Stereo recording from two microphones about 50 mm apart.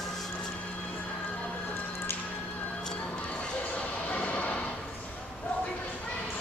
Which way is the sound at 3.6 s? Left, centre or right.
Left.